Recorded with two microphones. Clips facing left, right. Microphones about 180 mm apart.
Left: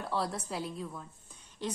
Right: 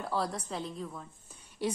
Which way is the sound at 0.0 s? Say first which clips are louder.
Right 1 dB; centre (ahead or behind).